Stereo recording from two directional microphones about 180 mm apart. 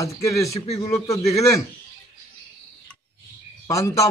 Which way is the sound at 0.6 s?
35° left (ahead or behind).